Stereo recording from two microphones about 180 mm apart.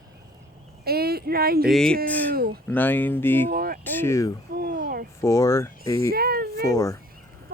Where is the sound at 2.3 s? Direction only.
55° right (ahead or behind).